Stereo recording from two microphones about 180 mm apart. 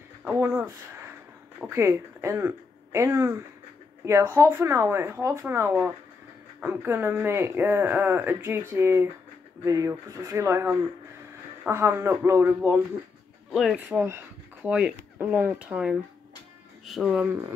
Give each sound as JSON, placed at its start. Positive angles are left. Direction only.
{"t": 0.2, "sound": "speech", "side_deg": -10}
{"t": 13.5, "sound": "speech", "side_deg": 0}